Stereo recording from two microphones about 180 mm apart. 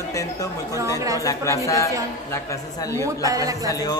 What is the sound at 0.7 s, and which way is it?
Speech, 15° right (ahead or behind).